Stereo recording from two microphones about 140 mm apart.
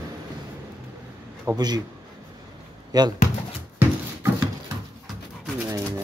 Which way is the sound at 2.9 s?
25° right (ahead or behind).